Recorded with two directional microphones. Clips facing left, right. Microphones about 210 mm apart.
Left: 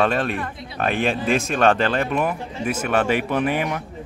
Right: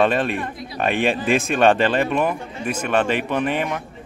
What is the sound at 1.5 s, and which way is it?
Speech, 5° right (ahead or behind).